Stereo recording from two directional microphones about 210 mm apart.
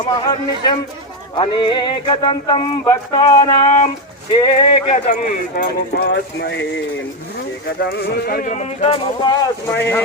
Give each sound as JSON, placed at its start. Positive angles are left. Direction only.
{"t": 0.0, "sound": "a sound", "side_deg": 20}
{"t": 4.3, "sound": "speech", "side_deg": 25}
{"t": 7.8, "sound": "speech", "side_deg": 50}
{"t": 9.6, "sound": "speech", "side_deg": 10}